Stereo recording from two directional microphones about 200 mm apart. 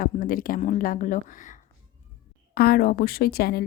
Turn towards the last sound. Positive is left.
turn(degrees=50)  # may be behind; listen again after turning